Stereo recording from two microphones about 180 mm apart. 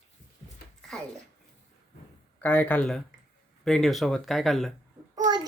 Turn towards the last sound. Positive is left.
turn(degrees=-20)  # may be behind; listen again after turning